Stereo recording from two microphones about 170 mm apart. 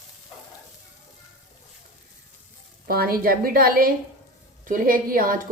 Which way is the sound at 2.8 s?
65° right (ahead or behind).